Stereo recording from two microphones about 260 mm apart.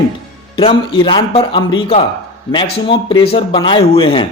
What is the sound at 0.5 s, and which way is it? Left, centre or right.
Speech, left.